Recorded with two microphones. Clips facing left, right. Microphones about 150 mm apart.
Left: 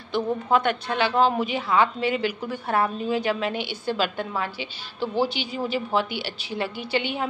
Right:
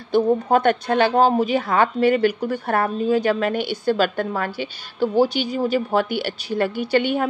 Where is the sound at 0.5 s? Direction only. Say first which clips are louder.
Right 5 dB; 45° right (ahead or behind).